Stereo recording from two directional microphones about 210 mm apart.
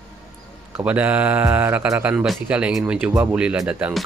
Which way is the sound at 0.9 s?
5° right (ahead or behind).